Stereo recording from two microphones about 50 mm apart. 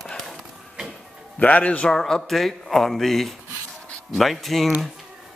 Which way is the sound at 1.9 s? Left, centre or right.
Centre.